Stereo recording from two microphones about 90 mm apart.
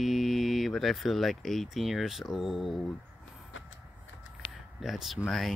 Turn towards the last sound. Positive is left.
turn(degrees=0)  # may be behind; listen again after turning